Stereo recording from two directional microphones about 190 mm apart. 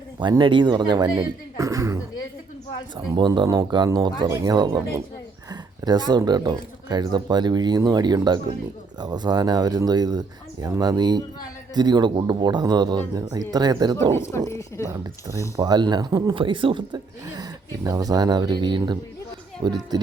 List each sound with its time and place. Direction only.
0.2 s speech: 25° right (ahead or behind)
3.1 s speech: 20° right (ahead or behind)
14.1 s speech: 15° left (ahead or behind)
14.8 s speech: 15° right (ahead or behind)